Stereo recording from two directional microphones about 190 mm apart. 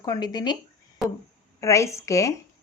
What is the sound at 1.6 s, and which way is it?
Speech, 15° left (ahead or behind).